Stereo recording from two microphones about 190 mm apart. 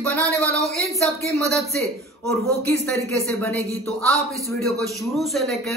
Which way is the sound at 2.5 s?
15° right (ahead or behind).